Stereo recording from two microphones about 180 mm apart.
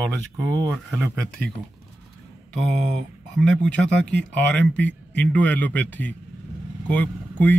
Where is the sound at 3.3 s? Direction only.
5° left (ahead or behind).